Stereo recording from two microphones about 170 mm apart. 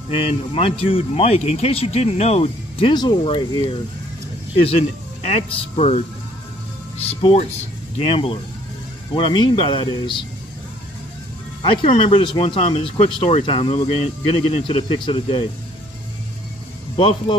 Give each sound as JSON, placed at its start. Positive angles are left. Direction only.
{"t": 0.1, "sound": "speech", "side_deg": 35}
{"t": 5.5, "sound": "speech", "side_deg": 35}
{"t": 7.1, "sound": "speech", "side_deg": 40}
{"t": 11.6, "sound": "speech", "side_deg": 35}
{"t": 16.9, "sound": "speech", "side_deg": 30}